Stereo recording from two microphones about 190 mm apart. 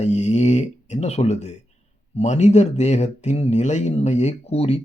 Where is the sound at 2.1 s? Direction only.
35° left (ahead or behind).